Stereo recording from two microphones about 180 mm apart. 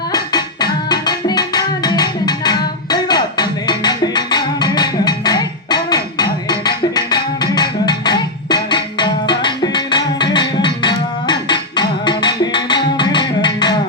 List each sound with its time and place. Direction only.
0.1 s music: 20° left (ahead or behind)